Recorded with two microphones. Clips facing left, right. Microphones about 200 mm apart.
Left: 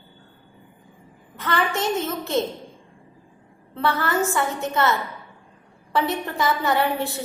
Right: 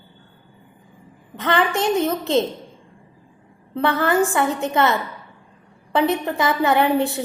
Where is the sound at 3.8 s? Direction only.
15° right (ahead or behind).